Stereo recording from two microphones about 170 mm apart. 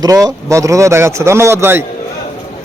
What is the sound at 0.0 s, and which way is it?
A man's voice, 20° right (ahead or behind).